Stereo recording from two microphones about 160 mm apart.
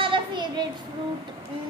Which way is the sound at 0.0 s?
30° right (ahead or behind).